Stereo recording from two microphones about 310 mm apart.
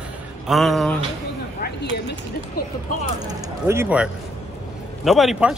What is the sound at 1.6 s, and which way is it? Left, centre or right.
Speech, left.